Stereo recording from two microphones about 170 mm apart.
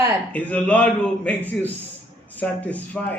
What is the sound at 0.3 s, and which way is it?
A man's voice, 5° left (ahead or behind).